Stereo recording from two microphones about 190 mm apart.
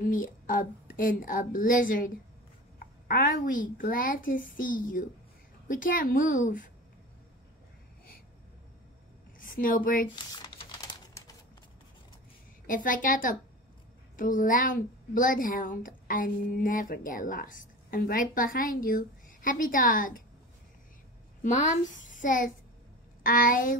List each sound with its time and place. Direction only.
0.0 s a woman's voice: 45° left (ahead or behind)
9.4 s a woman's voice: 45° left (ahead or behind)
10.1 s speech: 25° left (ahead or behind)
12.6 s a woman's voice: 45° left (ahead or behind)
21.4 s a child's voice: 40° left (ahead or behind)